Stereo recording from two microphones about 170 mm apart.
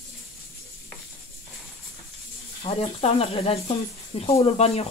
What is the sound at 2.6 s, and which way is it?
Speech, 35° left (ahead or behind).